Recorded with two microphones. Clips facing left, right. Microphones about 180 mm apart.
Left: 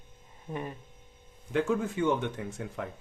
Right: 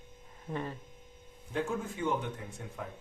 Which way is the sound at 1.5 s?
90° left.